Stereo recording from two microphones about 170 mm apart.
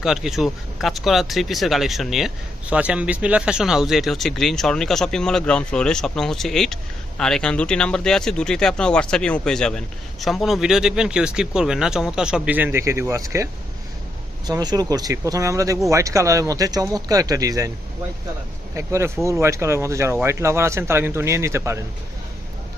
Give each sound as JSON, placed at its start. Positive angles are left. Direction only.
{"t": 0.0, "sound": "speech", "side_deg": 0}
{"t": 18.8, "sound": "speech", "side_deg": -15}